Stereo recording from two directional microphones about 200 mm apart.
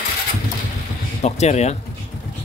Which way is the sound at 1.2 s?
35° left (ahead or behind).